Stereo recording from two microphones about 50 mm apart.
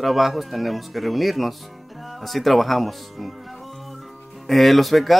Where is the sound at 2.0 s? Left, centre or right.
Centre.